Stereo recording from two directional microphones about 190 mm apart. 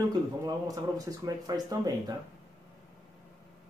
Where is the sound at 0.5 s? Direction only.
20° right (ahead or behind).